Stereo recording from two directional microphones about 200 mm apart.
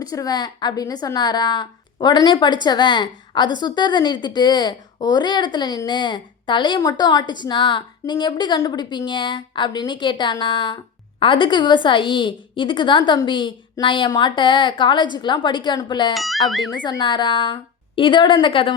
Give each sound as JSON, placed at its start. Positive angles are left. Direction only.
{"t": 0.0, "sound": "a woman's voice", "side_deg": 20}
{"t": 16.1, "sound": "speech", "side_deg": 0}
{"t": 16.8, "sound": "a woman's voice", "side_deg": 25}